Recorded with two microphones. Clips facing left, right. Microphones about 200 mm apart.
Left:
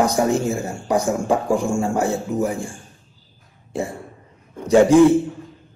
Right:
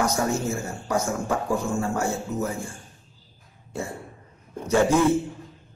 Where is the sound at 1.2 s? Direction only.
30° left (ahead or behind).